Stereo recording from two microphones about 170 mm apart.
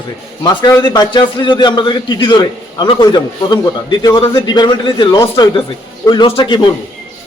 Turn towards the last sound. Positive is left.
turn(degrees=30)  # may be behind; listen again after turning